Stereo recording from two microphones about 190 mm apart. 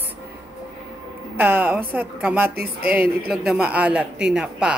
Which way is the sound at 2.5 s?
55° right (ahead or behind).